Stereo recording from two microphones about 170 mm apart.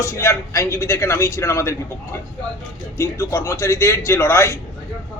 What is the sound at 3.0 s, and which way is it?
A man's voice, 15° left (ahead or behind).